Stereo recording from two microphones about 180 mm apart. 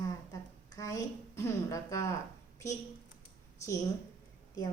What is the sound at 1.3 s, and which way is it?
Speech, 15° left (ahead or behind).